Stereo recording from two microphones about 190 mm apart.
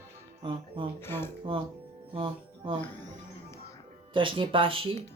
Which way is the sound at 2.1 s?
25° right (ahead or behind).